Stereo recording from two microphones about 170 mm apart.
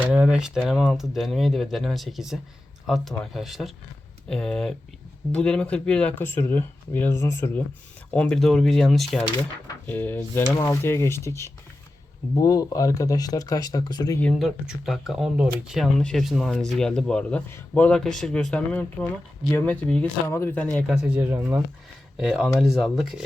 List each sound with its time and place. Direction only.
0.0 s speech: 5° right (ahead or behind); by 14.2 s 25° left (ahead or behind)
14.2 s speech: centre (ahead or behind)
20.9 s speech: 5° right (ahead or behind)